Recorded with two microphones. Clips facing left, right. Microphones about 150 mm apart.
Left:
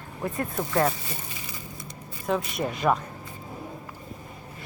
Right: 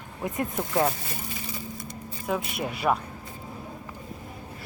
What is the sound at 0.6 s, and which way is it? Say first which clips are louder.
Speech: left 1 dB; 5° right (ahead or behind).